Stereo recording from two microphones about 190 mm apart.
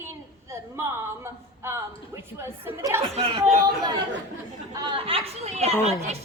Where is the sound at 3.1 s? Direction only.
30° right (ahead or behind).